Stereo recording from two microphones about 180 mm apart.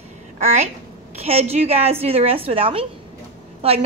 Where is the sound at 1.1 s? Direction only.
35° right (ahead or behind).